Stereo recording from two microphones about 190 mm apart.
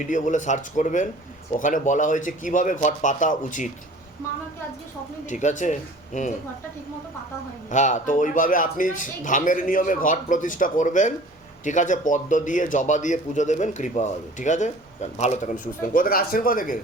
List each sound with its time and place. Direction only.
0.0 s speech: 40° left (ahead or behind)
5.3 s speech: 40° left (ahead or behind)
7.7 s a man's voice: 40° left (ahead or behind)